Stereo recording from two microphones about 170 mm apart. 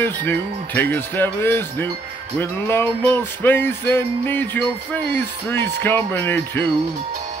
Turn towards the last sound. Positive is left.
turn(degrees=10)  # may be behind; listen again after turning